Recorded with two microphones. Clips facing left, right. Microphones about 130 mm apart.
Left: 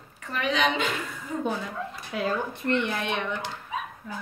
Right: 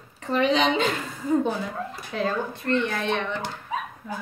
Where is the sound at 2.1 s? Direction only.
15° left (ahead or behind).